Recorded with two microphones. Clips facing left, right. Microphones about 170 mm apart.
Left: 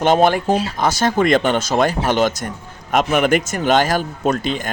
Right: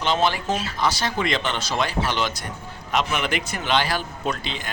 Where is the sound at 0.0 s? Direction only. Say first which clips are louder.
Left 8 dB; 50° left (ahead or behind).